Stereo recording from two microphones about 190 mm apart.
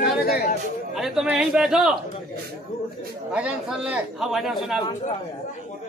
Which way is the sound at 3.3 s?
5° right (ahead or behind).